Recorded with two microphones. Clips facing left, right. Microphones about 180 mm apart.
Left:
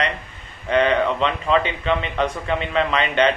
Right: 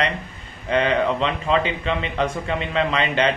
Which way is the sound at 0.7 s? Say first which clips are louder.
Left 1 dB; 35° right (ahead or behind).